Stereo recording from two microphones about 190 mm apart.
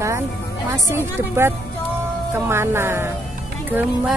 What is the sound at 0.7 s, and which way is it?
A woman's voice, 15° right (ahead or behind).